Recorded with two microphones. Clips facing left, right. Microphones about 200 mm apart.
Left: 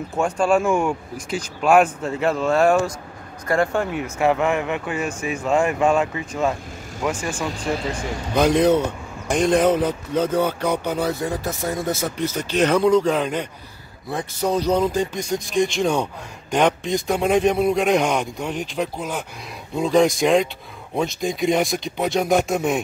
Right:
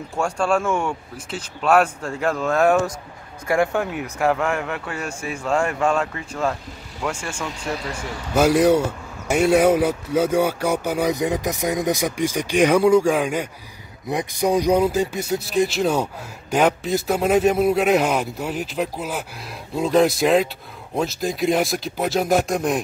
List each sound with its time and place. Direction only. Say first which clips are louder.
0.1 s speech: left 2 dB; 5° left (ahead or behind)
7.5 s speech: left 3 dB; 35° left (ahead or behind)
7.9 s speech: even; 5° right (ahead or behind)